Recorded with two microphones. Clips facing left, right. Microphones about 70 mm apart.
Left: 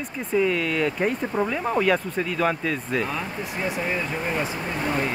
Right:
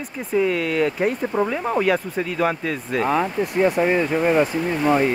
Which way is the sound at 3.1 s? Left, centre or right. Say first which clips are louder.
Right 9 dB; right.